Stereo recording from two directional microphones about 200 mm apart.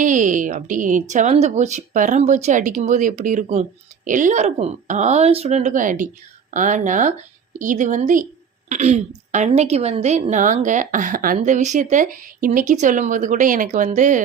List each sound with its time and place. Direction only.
0.0 s speech: 40° right (ahead or behind)